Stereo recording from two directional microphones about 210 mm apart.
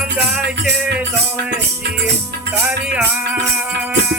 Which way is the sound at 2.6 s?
5° right (ahead or behind).